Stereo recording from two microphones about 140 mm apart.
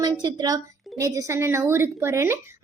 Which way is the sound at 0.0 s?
30° right (ahead or behind).